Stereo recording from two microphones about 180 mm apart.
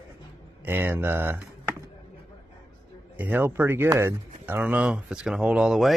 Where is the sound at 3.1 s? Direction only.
10° right (ahead or behind).